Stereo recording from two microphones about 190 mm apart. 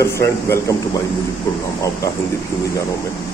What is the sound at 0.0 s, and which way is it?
Speech, 15° left (ahead or behind).